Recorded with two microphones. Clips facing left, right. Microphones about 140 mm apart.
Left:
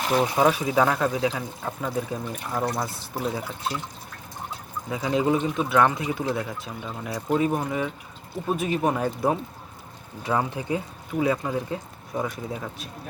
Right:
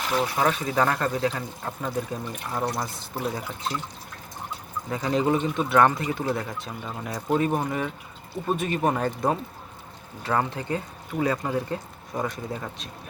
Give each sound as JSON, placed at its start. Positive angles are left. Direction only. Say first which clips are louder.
{"t": 0.1, "sound": "speech", "louder": "left 3 dB", "side_deg": 20}
{"t": 0.4, "sound": "speech", "louder": "left 3 dB", "side_deg": 10}
{"t": 4.9, "sound": "speech", "louder": "even", "side_deg": 5}